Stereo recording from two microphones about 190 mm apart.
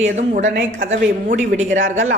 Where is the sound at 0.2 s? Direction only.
45° right (ahead or behind).